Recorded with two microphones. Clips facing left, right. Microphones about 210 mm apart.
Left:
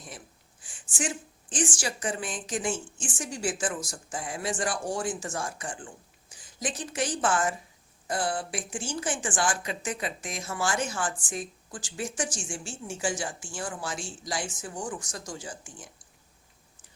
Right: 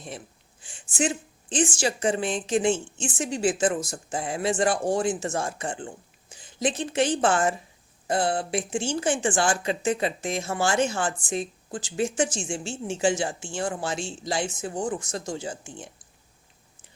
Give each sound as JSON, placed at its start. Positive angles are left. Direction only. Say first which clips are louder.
{"t": 0.6, "sound": "speech", "louder": "right 7 dB", "side_deg": -25}